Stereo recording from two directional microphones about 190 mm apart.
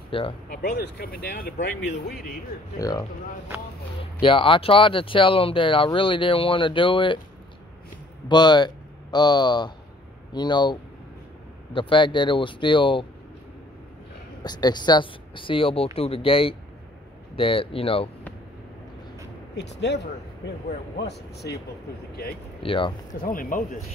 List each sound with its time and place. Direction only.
0.1 s speech: 25° left (ahead or behind)
0.5 s speech: 55° left (ahead or behind)
2.8 s speech: 20° left (ahead or behind)
4.2 s speech: 25° left (ahead or behind)
8.3 s speech: 20° left (ahead or behind)
14.4 s speech: 20° left (ahead or behind)
19.5 s speech: 65° left (ahead or behind)
21.0 s speech: 60° left (ahead or behind)
22.6 s speech: 25° left (ahead or behind)
23.2 s speech: 50° left (ahead or behind)